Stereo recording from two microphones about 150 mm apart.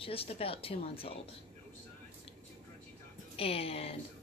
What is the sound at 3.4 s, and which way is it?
Speech, 40° left (ahead or behind).